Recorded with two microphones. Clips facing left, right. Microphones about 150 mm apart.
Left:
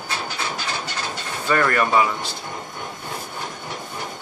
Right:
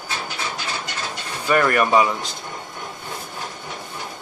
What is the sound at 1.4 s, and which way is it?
Speech, 15° right (ahead or behind).